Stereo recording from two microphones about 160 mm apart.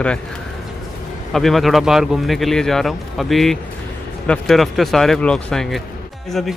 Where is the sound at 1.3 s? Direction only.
Centre (ahead or behind).